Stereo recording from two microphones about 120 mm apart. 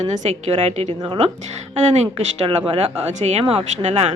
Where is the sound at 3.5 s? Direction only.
55° right (ahead or behind).